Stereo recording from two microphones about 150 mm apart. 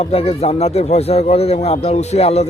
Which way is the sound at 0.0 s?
45° left (ahead or behind).